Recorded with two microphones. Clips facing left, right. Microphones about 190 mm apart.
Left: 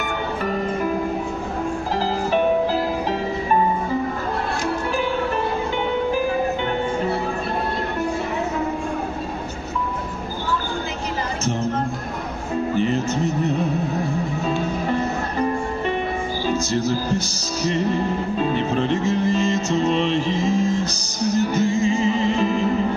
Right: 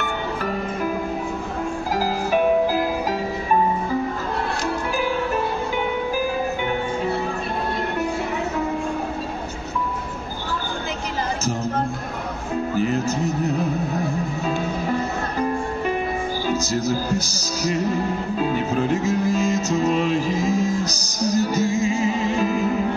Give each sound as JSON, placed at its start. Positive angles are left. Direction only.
{"t": 2.0, "sound": "music", "side_deg": -10}
{"t": 12.7, "sound": "music", "side_deg": -5}
{"t": 16.8, "sound": "music", "side_deg": -40}
{"t": 17.7, "sound": "music", "side_deg": -5}
{"t": 20.8, "sound": "music", "side_deg": -40}
{"t": 21.6, "sound": "music", "side_deg": -5}